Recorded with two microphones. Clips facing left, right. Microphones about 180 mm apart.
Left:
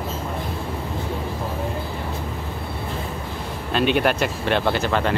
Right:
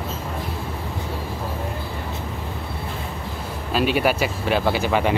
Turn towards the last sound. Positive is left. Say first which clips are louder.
# right 1 dB
turn(degrees=-10)  # may be behind; listen again after turning